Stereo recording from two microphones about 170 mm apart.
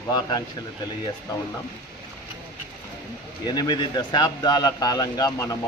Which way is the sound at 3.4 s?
25° left (ahead or behind).